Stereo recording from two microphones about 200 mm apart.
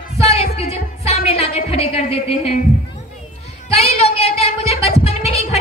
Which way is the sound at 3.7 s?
30° left (ahead or behind).